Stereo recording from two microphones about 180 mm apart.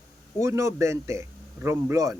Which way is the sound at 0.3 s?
15° right (ahead or behind).